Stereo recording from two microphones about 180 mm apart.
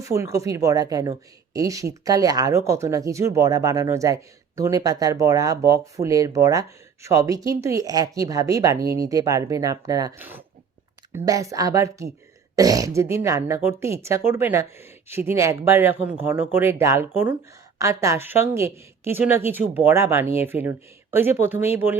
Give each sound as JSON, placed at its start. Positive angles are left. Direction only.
{"t": 0.0, "sound": "speech", "side_deg": -15}